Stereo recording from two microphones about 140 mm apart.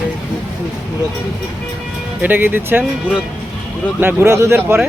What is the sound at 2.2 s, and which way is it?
Speech, 15° right (ahead or behind).